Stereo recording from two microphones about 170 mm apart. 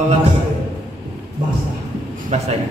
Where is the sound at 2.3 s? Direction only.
40° right (ahead or behind).